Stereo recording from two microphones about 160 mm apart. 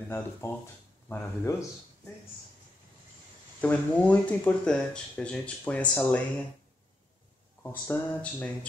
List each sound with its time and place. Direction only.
0.4 s speech: 15° left (ahead or behind)
3.6 s speech: 10° left (ahead or behind)
7.6 s speech: 10° left (ahead or behind)